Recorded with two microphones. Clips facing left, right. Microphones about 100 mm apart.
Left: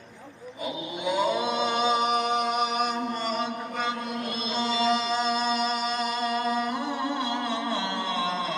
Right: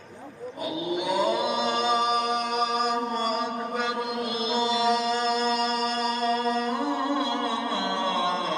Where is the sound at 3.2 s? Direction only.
10° right (ahead or behind).